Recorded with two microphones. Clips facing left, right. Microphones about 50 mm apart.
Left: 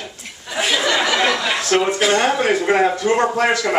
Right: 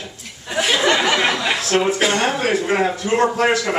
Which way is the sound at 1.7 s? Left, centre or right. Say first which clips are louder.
Left 2 dB; centre.